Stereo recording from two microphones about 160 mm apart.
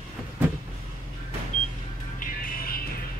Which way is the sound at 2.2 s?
60° left (ahead or behind).